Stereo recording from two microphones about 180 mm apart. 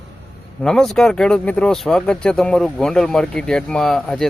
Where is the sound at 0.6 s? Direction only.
5° left (ahead or behind).